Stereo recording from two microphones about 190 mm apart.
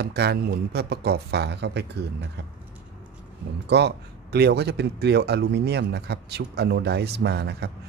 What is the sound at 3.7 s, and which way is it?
Speech, 65° right (ahead or behind).